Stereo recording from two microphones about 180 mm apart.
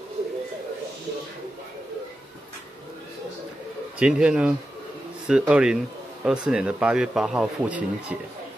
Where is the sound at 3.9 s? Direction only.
5° right (ahead or behind).